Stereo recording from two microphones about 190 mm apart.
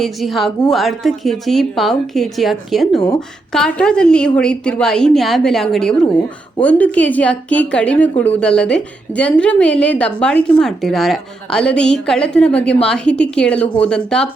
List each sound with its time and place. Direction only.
0.0 s a woman's voice: centre (ahead or behind)